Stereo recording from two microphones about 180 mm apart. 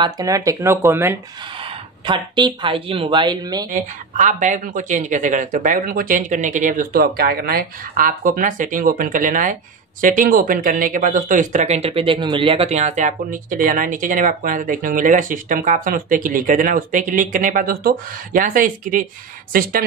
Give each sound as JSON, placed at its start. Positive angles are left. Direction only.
{"t": 0.0, "sound": "speech", "side_deg": -20}
{"t": 1.6, "sound": "speech", "side_deg": -25}
{"t": 3.7, "sound": "speech", "side_deg": -45}